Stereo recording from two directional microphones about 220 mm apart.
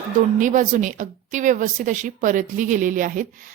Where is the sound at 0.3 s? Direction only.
35° right (ahead or behind).